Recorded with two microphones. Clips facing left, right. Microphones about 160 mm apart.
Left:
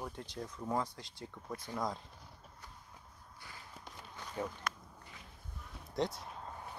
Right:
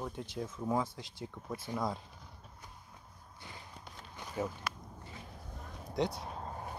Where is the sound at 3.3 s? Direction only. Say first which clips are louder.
Right 3 dB; 20° right (ahead or behind).